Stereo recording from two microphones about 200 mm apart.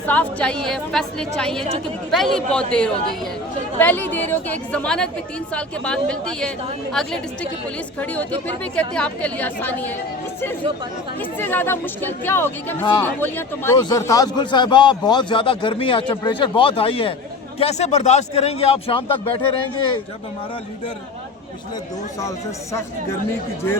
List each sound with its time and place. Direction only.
0.0 s a woman's voice: 5° left (ahead or behind)
11.2 s speech: 10° left (ahead or behind)
12.8 s a man's voice: 20° left (ahead or behind)
13.1 s a man's voice: 10° left (ahead or behind); by 19.4 s 25° left (ahead or behind)